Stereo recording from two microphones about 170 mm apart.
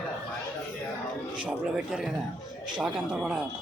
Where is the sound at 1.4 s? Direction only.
5° right (ahead or behind).